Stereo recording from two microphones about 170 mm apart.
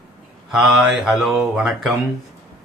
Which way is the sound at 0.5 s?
Centre (ahead or behind).